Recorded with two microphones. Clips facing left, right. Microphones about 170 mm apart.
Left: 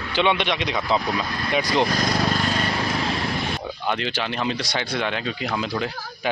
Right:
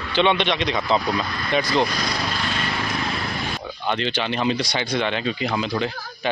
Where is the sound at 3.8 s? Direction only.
5° left (ahead or behind).